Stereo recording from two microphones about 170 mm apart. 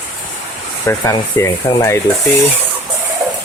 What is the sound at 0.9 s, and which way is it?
Speech, 15° left (ahead or behind).